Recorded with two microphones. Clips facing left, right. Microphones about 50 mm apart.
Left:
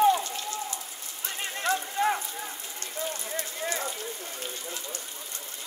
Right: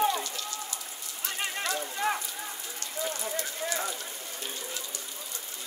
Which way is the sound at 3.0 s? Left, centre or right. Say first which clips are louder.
Right 1 dB; right.